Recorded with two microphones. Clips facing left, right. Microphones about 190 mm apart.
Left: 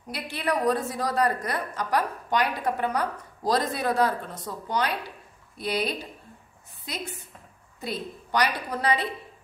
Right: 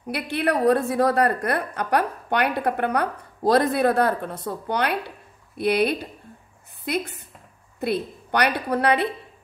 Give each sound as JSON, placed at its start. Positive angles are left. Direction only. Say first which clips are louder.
{"t": 0.1, "sound": "a woman's voice", "louder": "right 5 dB", "side_deg": -60}